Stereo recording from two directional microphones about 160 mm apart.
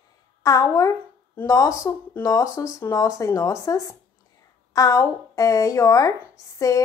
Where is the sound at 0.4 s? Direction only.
20° left (ahead or behind).